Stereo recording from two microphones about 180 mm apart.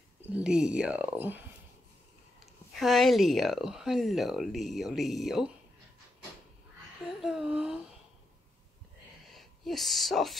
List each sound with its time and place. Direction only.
0.3 s speech: 5° right (ahead or behind)
2.7 s speech: centre (ahead or behind)
7.2 s speech: centre (ahead or behind)
9.3 s speech: centre (ahead or behind)